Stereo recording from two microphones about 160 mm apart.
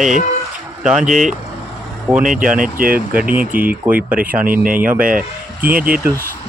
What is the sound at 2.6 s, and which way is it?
Speech, 65° right (ahead or behind).